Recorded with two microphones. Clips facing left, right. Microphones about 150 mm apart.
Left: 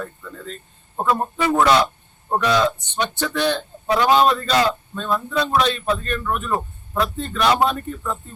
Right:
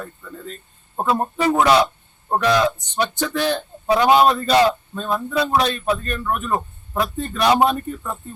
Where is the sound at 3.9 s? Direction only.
15° right (ahead or behind).